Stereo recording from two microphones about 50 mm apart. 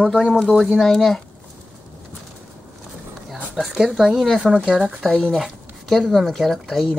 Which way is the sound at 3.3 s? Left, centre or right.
Centre.